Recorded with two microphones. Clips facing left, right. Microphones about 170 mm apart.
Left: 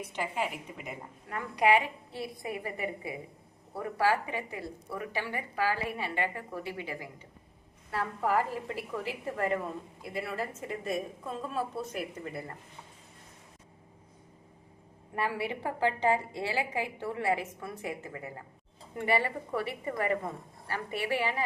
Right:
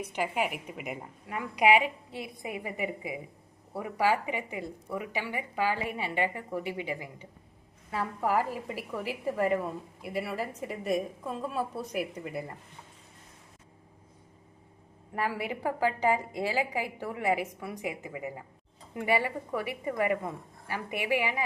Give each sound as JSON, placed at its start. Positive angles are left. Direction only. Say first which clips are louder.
{"t": 0.1, "sound": "a woman's voice", "louder": "right 3 dB", "side_deg": -15}
{"t": 15.2, "sound": "a woman's voice", "louder": "right 1 dB", "side_deg": -10}